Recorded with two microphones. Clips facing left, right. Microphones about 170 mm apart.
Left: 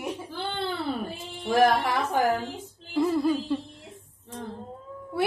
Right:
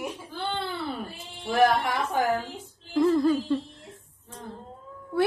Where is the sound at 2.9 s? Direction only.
10° left (ahead or behind).